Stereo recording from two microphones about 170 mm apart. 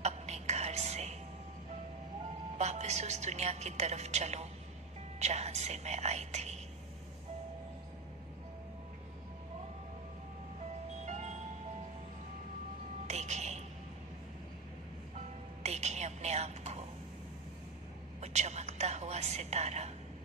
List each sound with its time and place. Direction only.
0.0 s music: 40° right (ahead or behind)
2.5 s a woman's voice: 40° right (ahead or behind)
11.1 s music: 45° right (ahead or behind)
13.0 s music: 40° right (ahead or behind)
15.1 s music: 40° right (ahead or behind)
18.2 s music: 40° right (ahead or behind)